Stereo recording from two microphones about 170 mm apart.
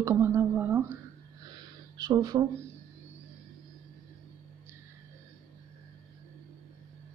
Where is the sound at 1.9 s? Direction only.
25° right (ahead or behind).